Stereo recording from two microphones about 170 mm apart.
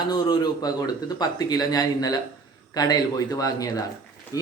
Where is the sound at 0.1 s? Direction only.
25° left (ahead or behind).